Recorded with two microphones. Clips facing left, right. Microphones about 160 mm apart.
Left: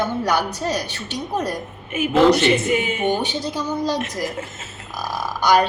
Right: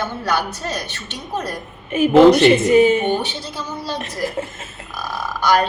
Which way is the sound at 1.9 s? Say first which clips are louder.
Right 5 dB; 35° right (ahead or behind).